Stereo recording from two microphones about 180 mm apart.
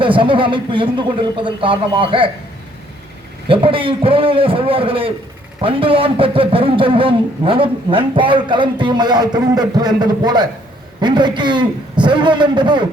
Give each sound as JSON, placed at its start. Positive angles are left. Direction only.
{"t": 0.0, "sound": "a man's voice", "side_deg": -30}
{"t": 3.5, "sound": "a man's voice", "side_deg": -30}